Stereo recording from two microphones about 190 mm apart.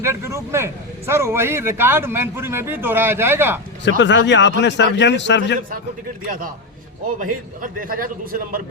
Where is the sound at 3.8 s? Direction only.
70° left (ahead or behind).